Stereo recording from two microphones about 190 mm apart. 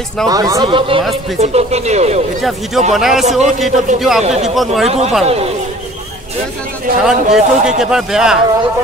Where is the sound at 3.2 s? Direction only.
40° right (ahead or behind).